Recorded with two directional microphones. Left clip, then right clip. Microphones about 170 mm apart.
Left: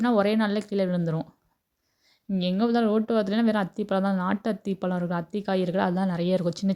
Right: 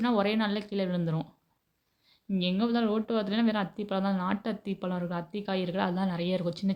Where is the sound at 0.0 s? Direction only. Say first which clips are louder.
Left 5 dB; 40° left (ahead or behind).